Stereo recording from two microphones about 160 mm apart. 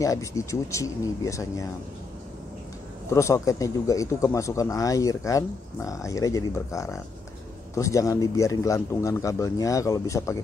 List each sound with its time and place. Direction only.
0.0 s speech: 20° left (ahead or behind)
3.1 s speech: 20° left (ahead or behind)